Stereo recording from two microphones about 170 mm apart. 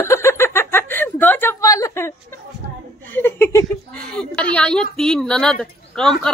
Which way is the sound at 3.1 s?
15° left (ahead or behind).